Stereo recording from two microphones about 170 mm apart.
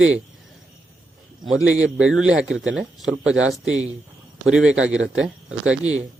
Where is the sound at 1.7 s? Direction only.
5° right (ahead or behind).